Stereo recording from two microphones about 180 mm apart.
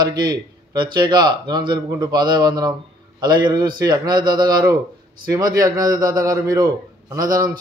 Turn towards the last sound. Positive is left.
turn(degrees=-20)  # may be behind; listen again after turning